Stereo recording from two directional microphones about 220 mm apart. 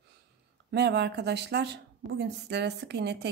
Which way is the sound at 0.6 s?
50° right (ahead or behind).